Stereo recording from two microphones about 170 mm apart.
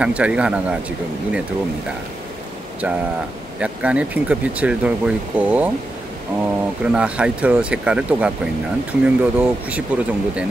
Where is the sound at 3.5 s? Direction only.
5° right (ahead or behind).